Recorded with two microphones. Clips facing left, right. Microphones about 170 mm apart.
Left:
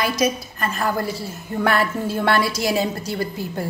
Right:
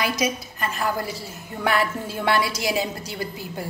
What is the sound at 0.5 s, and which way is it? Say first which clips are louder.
Speech: left 2 dB; 45° left (ahead or behind).